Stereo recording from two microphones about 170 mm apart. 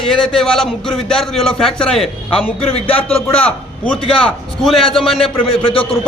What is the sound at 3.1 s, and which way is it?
A man's voice, 10° left (ahead or behind).